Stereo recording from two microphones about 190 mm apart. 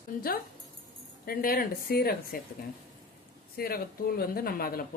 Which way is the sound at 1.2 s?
50° left (ahead or behind).